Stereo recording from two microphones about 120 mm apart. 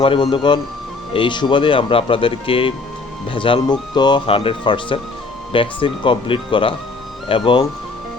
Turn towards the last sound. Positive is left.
turn(degrees=45)  # may be behind; listen again after turning